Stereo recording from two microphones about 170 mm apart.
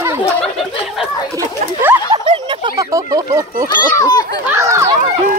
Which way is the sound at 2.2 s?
30° right (ahead or behind).